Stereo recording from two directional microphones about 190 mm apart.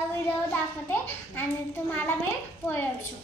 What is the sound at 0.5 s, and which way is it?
Speech, 10° left (ahead or behind).